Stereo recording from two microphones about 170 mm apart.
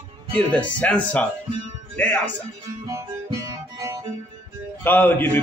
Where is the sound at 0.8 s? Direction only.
10° left (ahead or behind).